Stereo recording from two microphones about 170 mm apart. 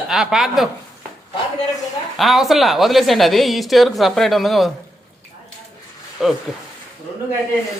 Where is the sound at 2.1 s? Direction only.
Centre (ahead or behind).